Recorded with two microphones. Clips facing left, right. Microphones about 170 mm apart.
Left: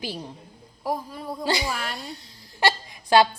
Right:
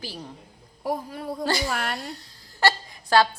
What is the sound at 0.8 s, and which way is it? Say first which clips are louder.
A man's voice: right 1 dB; 60° right (ahead or behind).